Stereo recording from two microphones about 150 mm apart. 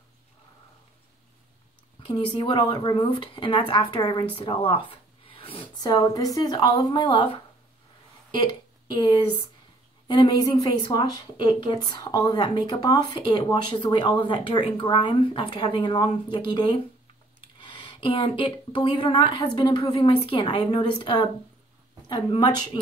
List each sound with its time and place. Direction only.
2.0 s speech: 35° left (ahead or behind)
5.9 s a woman's voice: 25° left (ahead or behind)
8.9 s a woman's voice: 30° left (ahead or behind)